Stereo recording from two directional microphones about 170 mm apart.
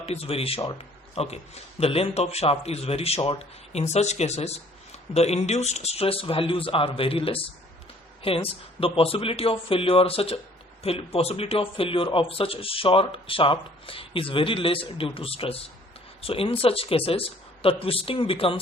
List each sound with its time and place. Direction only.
0.0 s a man's voice: 35° left (ahead or behind)